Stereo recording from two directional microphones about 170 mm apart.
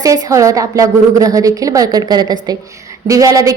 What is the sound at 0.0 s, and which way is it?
A woman's voice, 20° right (ahead or behind).